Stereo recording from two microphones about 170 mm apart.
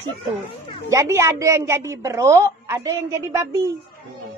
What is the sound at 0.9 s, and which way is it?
A man's voice, 15° right (ahead or behind).